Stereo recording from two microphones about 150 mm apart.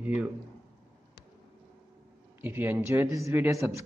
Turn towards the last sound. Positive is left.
turn(degrees=-20)  # may be behind; listen again after turning